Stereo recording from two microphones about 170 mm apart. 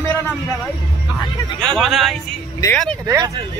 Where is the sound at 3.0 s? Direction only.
20° right (ahead or behind).